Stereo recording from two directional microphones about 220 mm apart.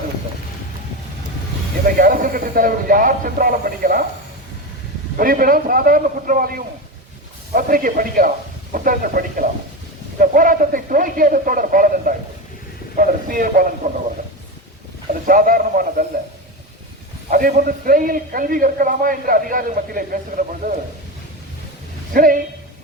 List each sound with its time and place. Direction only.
2.0 s a man's voice: 40° right (ahead or behind)
5.1 s a man's voice: 40° right (ahead or behind)
15.3 s a man's voice: 40° right (ahead or behind)
17.3 s a man's voice: 40° right (ahead or behind)
22.1 s a man's voice: 40° right (ahead or behind)